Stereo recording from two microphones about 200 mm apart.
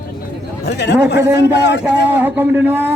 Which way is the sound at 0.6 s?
55° left (ahead or behind).